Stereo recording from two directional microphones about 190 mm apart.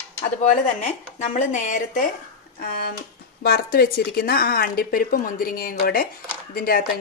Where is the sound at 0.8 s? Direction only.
35° left (ahead or behind).